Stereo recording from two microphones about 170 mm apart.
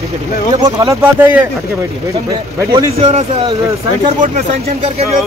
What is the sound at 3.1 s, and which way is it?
Speech, 40° right (ahead or behind).